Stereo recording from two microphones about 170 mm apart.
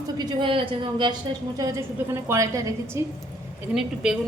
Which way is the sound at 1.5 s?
20° right (ahead or behind).